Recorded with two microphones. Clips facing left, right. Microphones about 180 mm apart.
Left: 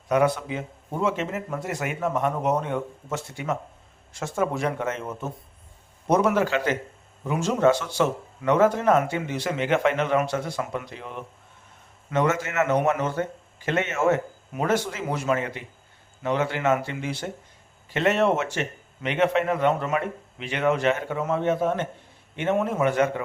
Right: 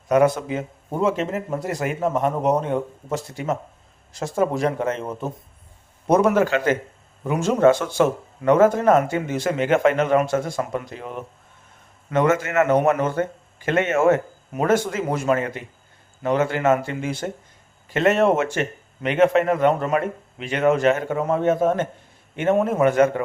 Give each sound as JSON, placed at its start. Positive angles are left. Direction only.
{"t": 0.1, "sound": "speech", "side_deg": -45}
{"t": 6.1, "sound": "speech", "side_deg": -50}